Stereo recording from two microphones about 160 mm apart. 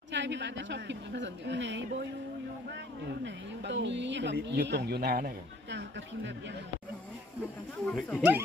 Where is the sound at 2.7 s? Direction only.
90° right.